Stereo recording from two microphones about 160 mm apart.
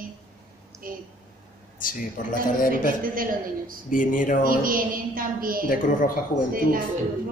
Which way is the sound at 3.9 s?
55° left (ahead or behind).